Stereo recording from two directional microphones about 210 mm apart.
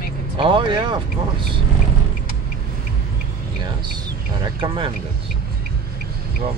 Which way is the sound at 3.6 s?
20° right (ahead or behind).